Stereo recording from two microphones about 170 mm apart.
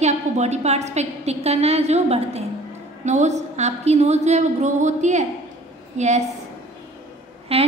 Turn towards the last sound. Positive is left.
turn(degrees=-35)  # may be behind; listen again after turning